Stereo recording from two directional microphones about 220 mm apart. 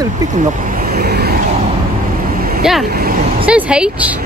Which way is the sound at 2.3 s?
40° right (ahead or behind).